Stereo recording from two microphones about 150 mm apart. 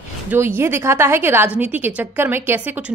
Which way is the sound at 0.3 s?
15° right (ahead or behind).